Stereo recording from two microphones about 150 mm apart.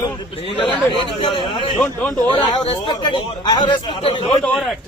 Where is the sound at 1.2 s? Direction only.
35° left (ahead or behind).